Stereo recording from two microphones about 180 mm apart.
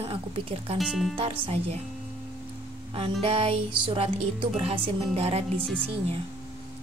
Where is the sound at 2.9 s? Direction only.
30° right (ahead or behind).